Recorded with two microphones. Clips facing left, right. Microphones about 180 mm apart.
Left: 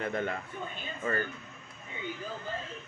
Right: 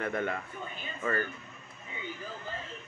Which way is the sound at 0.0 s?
30° left (ahead or behind).